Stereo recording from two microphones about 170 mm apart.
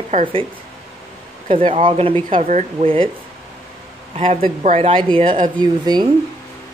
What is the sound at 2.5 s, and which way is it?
Speech, 40° right (ahead or behind).